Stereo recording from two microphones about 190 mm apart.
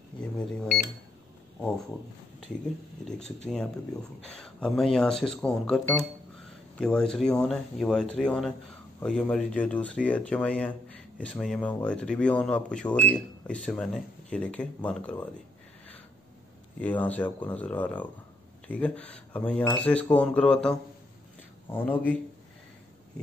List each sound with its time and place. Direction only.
0.2 s a sound: 5° left (ahead or behind)
3.2 s speech: 35° left (ahead or behind)
3.4 s speech: 5° left (ahead or behind)
16.8 s speech: 10° left (ahead or behind)